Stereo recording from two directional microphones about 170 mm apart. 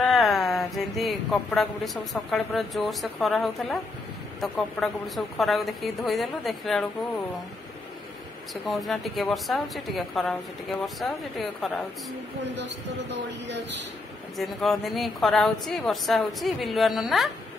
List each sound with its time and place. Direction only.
0.0 s a sound: centre (ahead or behind)
2.3 s a woman's voice: centre (ahead or behind)
8.6 s a woman's voice: centre (ahead or behind)
12.4 s speech: 90° right
14.3 s a woman's voice: centre (ahead or behind)